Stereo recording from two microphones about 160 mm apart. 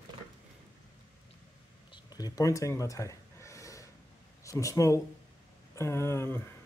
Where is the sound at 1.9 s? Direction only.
25° left (ahead or behind).